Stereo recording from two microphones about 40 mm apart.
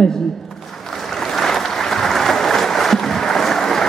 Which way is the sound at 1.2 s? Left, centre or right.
Centre.